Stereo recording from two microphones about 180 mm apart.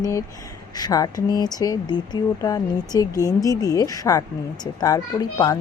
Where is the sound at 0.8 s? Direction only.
20° left (ahead or behind).